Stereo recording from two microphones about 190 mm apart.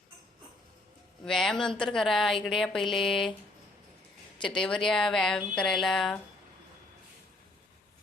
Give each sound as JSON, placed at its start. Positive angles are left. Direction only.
{"t": 1.2, "sound": "a woman's voice", "side_deg": 0}
{"t": 4.4, "sound": "a woman's voice", "side_deg": 25}
{"t": 4.6, "sound": "a woman's voice", "side_deg": 5}